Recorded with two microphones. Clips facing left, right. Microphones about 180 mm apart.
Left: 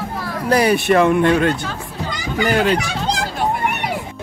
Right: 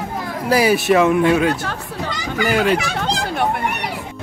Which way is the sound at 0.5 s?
5° right (ahead or behind).